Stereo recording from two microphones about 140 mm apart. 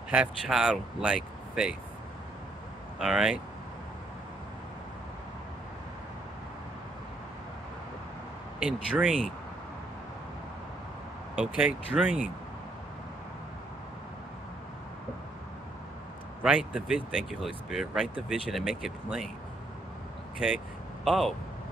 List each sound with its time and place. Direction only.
0.1 s speech: 5° right (ahead or behind)
3.0 s speech: 5° right (ahead or behind)
8.5 s speech: 5° right (ahead or behind)
11.3 s speech: 10° right (ahead or behind)
16.4 s speech: 10° right (ahead or behind)
21.0 s speech: centre (ahead or behind)